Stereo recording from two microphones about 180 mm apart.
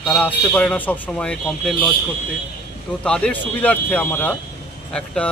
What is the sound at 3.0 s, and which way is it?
Speech, 5° left (ahead or behind).